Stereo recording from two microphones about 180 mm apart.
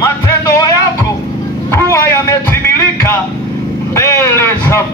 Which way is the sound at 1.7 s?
15° left (ahead or behind).